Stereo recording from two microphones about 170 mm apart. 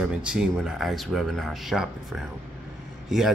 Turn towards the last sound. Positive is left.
turn(degrees=0)  # may be behind; listen again after turning